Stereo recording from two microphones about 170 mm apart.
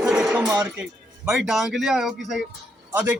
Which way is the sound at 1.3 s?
5° right (ahead or behind).